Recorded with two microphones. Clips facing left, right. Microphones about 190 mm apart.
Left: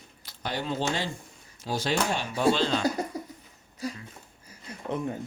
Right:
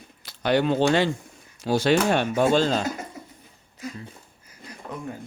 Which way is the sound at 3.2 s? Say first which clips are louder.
Left 5 dB; 35° left (ahead or behind).